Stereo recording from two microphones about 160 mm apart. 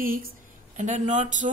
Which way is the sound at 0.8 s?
50° right (ahead or behind).